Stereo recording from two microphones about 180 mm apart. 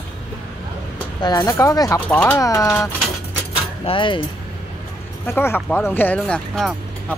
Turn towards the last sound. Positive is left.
turn(degrees=5)  # may be behind; listen again after turning